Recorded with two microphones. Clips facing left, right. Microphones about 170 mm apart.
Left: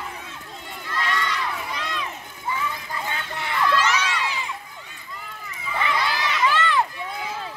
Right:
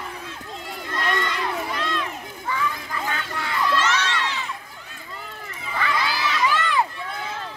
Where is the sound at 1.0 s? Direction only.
50° right (ahead or behind).